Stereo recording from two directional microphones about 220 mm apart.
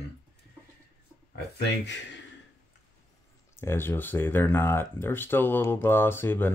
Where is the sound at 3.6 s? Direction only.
10° left (ahead or behind).